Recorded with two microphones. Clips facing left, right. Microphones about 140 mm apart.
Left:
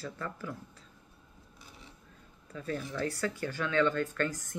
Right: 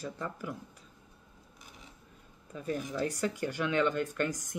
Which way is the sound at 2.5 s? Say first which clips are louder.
Right 2 dB; 15° right (ahead or behind).